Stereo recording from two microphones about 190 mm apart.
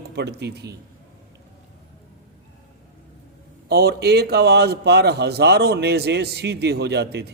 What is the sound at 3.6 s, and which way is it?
Speech, 60° right (ahead or behind).